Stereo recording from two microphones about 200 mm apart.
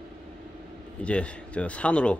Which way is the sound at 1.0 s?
5° left (ahead or behind).